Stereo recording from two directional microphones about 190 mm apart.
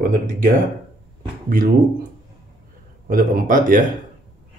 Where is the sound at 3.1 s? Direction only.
45° right (ahead or behind).